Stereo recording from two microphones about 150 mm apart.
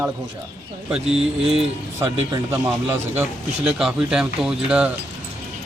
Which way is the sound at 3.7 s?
5° right (ahead or behind).